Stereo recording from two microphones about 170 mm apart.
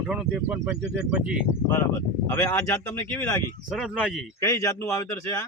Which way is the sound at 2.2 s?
15° left (ahead or behind).